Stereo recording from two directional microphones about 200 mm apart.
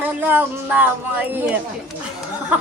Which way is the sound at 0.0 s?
10° right (ahead or behind).